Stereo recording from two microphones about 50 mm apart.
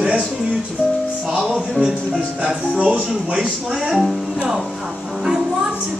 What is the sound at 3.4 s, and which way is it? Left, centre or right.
A woman's voice, centre.